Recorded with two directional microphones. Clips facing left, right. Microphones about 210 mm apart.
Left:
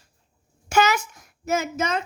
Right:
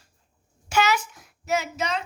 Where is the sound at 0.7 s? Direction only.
45° left (ahead or behind).